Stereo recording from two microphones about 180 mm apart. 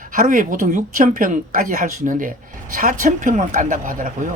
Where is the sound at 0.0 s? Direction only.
45° right (ahead or behind).